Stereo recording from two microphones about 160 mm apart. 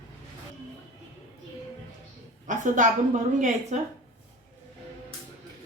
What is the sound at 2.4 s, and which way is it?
A woman's voice, 55° right (ahead or behind).